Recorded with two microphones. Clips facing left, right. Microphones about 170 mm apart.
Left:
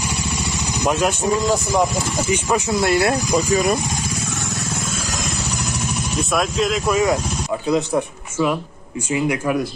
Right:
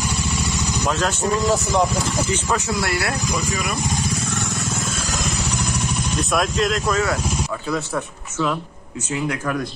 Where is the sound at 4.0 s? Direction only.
5° left (ahead or behind).